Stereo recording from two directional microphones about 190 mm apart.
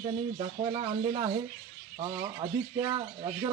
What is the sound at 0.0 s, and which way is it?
Speech, 25° right (ahead or behind).